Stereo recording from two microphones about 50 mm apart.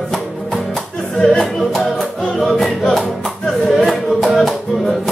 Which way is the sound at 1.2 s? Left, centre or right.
Centre.